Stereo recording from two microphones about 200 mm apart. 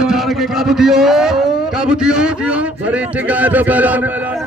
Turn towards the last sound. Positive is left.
turn(degrees=-10)  # may be behind; listen again after turning